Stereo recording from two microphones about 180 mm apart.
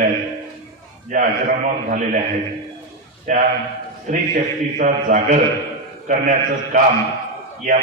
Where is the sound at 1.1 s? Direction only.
50° right (ahead or behind).